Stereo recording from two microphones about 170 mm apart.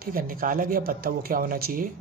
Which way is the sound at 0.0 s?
55° right (ahead or behind).